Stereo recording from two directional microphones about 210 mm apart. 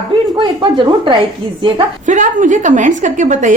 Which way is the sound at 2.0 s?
40° right (ahead or behind).